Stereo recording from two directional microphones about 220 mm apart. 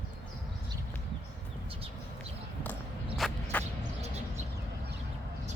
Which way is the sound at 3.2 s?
Centre (ahead or behind).